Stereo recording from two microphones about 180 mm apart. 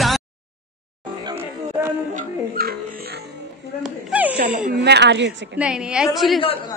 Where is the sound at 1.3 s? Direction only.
15° right (ahead or behind).